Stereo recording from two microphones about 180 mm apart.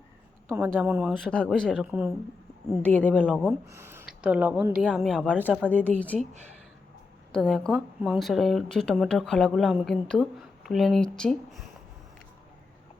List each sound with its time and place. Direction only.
0.4 s a woman's voice: 10° right (ahead or behind)
1.1 s speech: 5° left (ahead or behind)
1.7 s speech: 5° right (ahead or behind)
2.6 s a woman's voice: 15° left (ahead or behind)
3.2 s speech: 5° right (ahead or behind)
5.7 s a woman's voice: 10° left (ahead or behind)
7.3 s speech: 5° left (ahead or behind)